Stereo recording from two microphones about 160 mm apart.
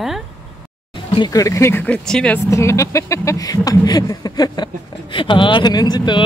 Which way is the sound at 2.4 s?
20° left (ahead or behind).